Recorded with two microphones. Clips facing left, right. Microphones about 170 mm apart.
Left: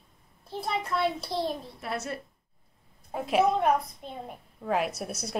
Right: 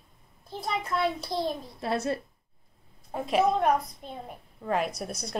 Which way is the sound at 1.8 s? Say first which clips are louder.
Right 5 dB; 30° right (ahead or behind).